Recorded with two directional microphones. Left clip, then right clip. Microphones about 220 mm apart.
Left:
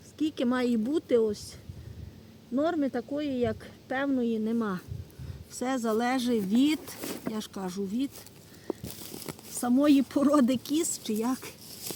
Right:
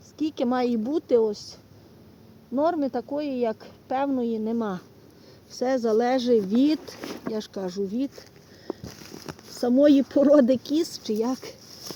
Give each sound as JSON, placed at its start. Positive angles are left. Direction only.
{"t": 0.2, "sound": "a woman's voice", "side_deg": 0}
{"t": 2.6, "sound": "a woman's voice", "side_deg": 0}
{"t": 5.5, "sound": "speech", "side_deg": 15}
{"t": 8.7, "sound": "a sound", "side_deg": -10}
{"t": 9.8, "sound": "speech", "side_deg": 20}